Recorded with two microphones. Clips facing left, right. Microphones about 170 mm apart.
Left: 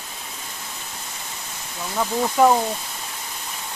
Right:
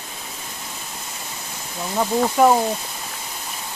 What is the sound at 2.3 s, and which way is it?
Speech, 5° right (ahead or behind).